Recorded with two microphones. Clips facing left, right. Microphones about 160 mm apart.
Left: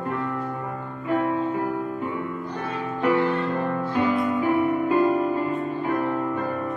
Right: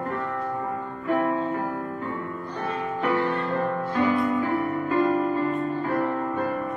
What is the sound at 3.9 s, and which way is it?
Music, 15° left (ahead or behind).